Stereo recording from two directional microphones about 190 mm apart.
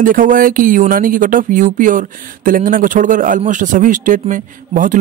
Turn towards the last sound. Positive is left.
turn(degrees=-45)  # may be behind; listen again after turning